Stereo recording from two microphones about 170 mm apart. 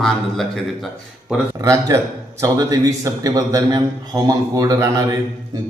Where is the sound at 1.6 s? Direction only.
20° right (ahead or behind).